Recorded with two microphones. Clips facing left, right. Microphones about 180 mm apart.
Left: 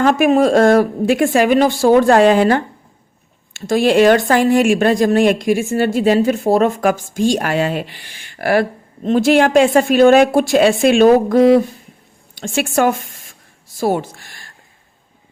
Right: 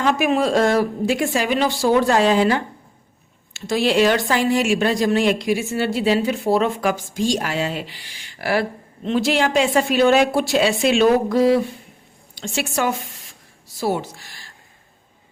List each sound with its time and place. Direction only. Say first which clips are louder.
0.0 s a woman's voice: left 6 dB; 45° left (ahead or behind)